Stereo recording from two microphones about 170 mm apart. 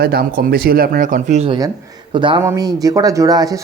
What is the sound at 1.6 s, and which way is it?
Speech, 25° right (ahead or behind).